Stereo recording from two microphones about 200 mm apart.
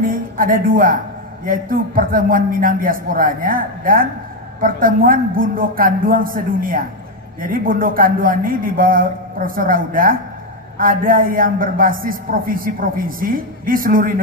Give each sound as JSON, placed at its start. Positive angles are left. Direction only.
{"t": 0.0, "sound": "a man's voice", "side_deg": -45}